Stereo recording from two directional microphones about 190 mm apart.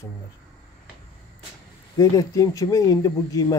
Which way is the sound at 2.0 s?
20° left (ahead or behind).